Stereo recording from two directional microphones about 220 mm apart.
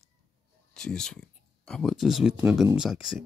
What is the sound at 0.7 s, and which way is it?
Speech, 5° left (ahead or behind).